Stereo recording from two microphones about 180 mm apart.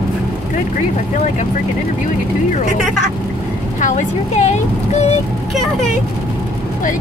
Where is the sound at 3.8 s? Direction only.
45° left (ahead or behind).